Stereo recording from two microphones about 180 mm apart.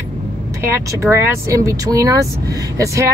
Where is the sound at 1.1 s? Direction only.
15° right (ahead or behind).